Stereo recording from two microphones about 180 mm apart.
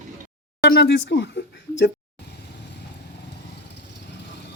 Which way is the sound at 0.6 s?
65° left (ahead or behind).